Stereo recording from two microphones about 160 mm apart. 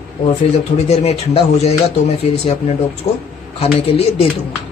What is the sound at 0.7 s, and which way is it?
A man's voice, 45° left (ahead or behind).